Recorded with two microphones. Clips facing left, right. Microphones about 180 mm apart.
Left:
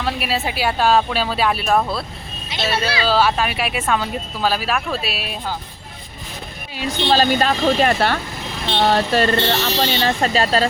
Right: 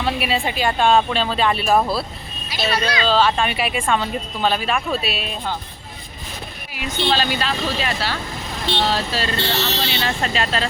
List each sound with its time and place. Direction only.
0.0 s speech: centre (ahead or behind)
7.1 s speech: 45° left (ahead or behind)